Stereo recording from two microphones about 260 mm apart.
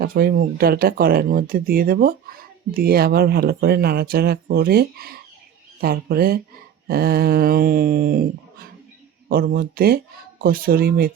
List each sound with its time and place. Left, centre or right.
0.0 s speech: right